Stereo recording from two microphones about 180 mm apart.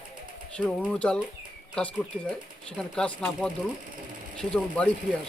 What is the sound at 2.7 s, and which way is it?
Speech, 5° left (ahead or behind).